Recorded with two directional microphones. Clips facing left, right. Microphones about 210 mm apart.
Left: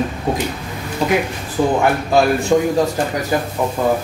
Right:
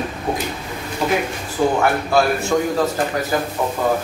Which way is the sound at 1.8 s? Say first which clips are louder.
Left 2 dB; 15° left (ahead or behind).